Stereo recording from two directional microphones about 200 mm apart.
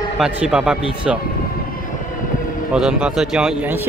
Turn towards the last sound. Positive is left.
turn(degrees=0)  # may be behind; listen again after turning